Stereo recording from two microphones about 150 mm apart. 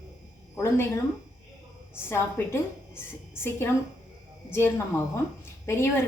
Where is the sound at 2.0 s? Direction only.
15° left (ahead or behind).